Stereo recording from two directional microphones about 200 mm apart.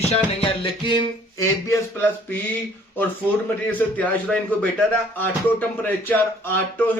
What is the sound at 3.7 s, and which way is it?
Speech, 5° left (ahead or behind).